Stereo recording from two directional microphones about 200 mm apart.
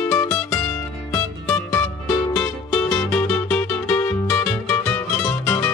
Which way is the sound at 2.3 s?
5° left (ahead or behind).